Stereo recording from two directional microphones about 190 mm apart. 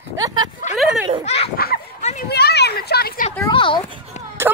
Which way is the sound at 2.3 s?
60° left (ahead or behind).